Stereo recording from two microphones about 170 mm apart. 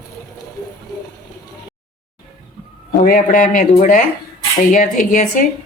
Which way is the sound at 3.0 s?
50° left (ahead or behind).